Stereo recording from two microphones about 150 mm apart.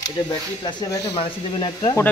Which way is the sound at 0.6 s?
30° left (ahead or behind).